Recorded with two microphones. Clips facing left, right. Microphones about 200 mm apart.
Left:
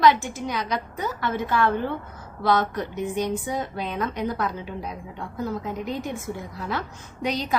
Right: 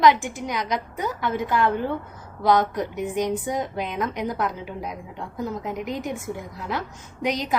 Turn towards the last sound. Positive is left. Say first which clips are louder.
# right 1 dB
turn(degrees=-15)  # may be behind; listen again after turning